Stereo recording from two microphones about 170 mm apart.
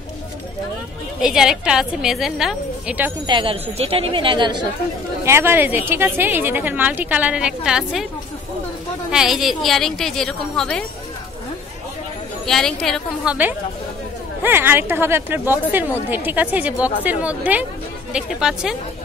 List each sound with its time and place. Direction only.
1.2 s a woman's voice: 5° right (ahead or behind)
3.3 s speech: 30° right (ahead or behind)
5.2 s speech: 15° right (ahead or behind)
9.1 s a woman's voice: centre (ahead or behind)
12.4 s a woman's voice: centre (ahead or behind)